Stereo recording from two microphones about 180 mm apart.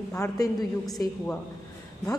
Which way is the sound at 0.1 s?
20° left (ahead or behind).